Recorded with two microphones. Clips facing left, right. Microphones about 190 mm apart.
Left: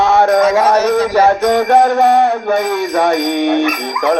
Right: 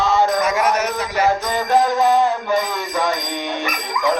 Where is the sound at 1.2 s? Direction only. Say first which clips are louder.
Left 8 dB; 65° left (ahead or behind).